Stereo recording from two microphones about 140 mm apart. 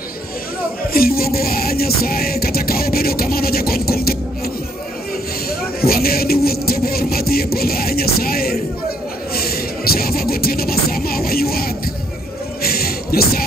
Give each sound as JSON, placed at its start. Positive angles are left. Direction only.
{"t": 0.8, "sound": "music", "side_deg": 90}
{"t": 5.5, "sound": "music", "side_deg": 90}
{"t": 12.6, "sound": "a sound", "side_deg": 90}